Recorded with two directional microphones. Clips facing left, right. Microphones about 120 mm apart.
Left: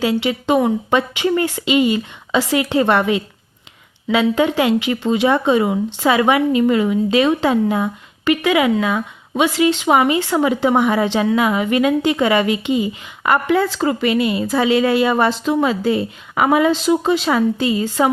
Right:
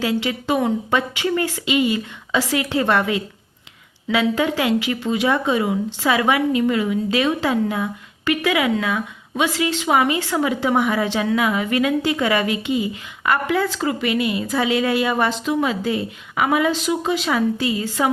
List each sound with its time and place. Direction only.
0.0 s a woman's voice: 20° left (ahead or behind)